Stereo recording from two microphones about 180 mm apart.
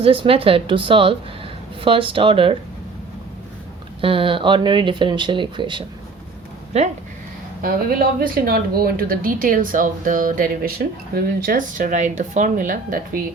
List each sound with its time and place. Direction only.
0.0 s speech: 30° right (ahead or behind)
4.0 s speech: 30° right (ahead or behind)
7.6 s speech: 55° right (ahead or behind)